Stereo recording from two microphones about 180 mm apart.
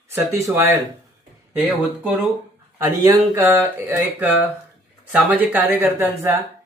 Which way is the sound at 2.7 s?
20° right (ahead or behind).